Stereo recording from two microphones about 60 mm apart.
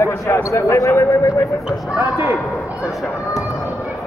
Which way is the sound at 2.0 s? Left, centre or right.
Right.